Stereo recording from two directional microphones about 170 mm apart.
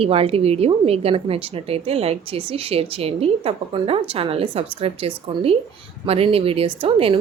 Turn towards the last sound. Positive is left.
turn(degrees=-35)  # may be behind; listen again after turning